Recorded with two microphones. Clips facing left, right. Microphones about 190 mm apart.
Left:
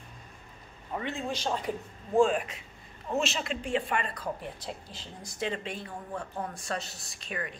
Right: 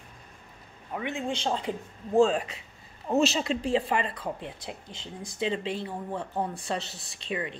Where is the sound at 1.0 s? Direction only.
15° right (ahead or behind).